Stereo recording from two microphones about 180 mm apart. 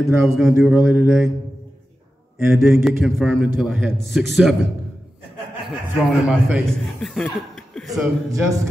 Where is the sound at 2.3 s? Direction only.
15° right (ahead or behind).